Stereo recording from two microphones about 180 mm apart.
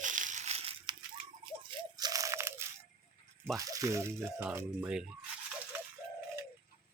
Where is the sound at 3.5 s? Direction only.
20° right (ahead or behind).